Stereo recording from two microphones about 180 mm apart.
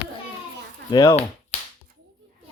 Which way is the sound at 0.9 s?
20° left (ahead or behind).